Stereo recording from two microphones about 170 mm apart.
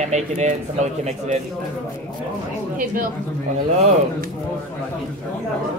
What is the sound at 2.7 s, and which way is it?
Speech, 55° right (ahead or behind).